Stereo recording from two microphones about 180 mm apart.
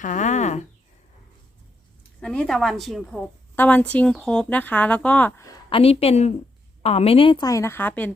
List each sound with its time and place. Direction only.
0.0 s speech: 45° left (ahead or behind)
2.2 s a woman's voice: 5° left (ahead or behind)
5.7 s a woman's voice: 35° left (ahead or behind); by 8.1 s 10° left (ahead or behind)